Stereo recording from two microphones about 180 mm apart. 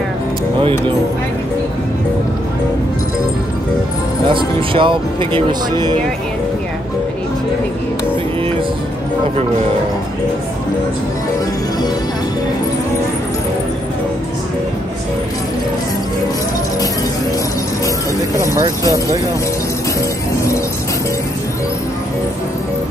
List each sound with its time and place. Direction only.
0.6 s speech: 30° right (ahead or behind)
4.3 s speech: 30° right (ahead or behind)
18.6 s speech: 20° right (ahead or behind)